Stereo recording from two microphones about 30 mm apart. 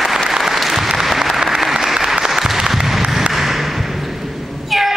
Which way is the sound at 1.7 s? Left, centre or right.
Centre.